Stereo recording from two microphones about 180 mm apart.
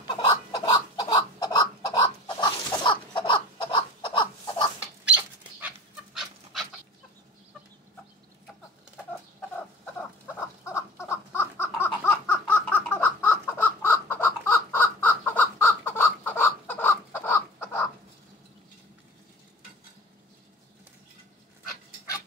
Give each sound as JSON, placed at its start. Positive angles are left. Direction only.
{"t": 0.0, "sound": "chicken", "side_deg": 20}
{"t": 5.0, "sound": "dog", "side_deg": -10}
{"t": 10.6, "sound": "a sound", "side_deg": 15}